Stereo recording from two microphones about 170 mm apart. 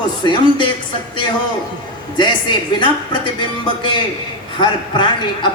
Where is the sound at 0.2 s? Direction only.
25° left (ahead or behind).